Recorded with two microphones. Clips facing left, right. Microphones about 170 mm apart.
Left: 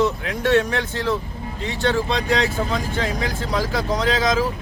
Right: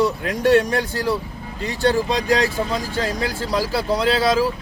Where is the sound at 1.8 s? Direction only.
10° right (ahead or behind).